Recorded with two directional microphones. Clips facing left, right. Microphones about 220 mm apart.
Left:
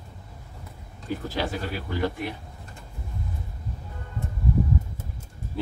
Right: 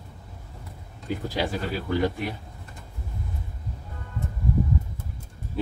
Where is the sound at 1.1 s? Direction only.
15° right (ahead or behind).